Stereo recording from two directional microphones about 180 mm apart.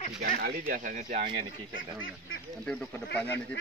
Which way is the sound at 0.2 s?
55° right (ahead or behind).